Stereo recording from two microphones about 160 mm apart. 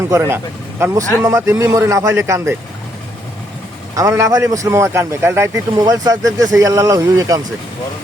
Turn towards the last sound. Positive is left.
turn(degrees=-20)  # may be behind; listen again after turning